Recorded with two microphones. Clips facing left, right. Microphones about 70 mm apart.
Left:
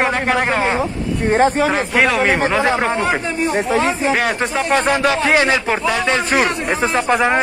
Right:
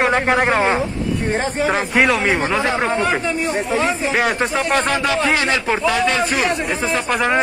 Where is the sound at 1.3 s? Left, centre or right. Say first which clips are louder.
Left 7 dB; left.